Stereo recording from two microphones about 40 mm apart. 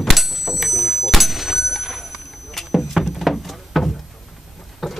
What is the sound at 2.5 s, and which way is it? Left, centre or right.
Vehicle, centre.